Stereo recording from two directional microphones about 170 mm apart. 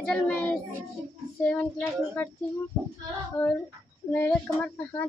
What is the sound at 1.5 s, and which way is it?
Speech, 10° left (ahead or behind).